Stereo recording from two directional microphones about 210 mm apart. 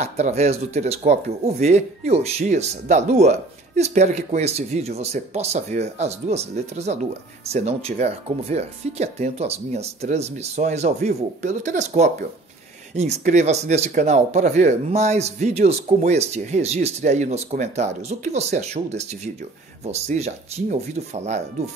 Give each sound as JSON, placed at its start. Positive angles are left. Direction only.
{"t": 0.0, "sound": "speech", "side_deg": -30}